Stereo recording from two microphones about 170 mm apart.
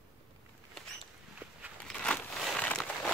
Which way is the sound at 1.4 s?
10° right (ahead or behind).